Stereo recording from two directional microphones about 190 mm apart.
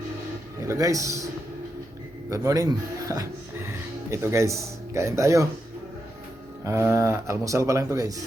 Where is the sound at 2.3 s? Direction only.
15° right (ahead or behind).